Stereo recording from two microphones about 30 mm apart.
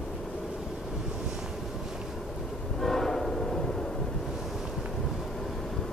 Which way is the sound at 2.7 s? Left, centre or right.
Centre.